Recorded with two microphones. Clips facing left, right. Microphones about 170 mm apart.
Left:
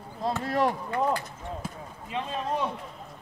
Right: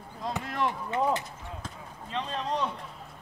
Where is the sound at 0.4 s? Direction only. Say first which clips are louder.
Left 5 dB; 40° left (ahead or behind).